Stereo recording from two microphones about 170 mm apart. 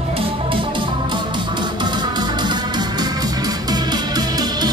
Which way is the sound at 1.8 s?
25° right (ahead or behind).